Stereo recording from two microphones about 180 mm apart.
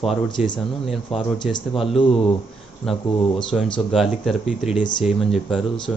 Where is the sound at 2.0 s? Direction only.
30° left (ahead or behind).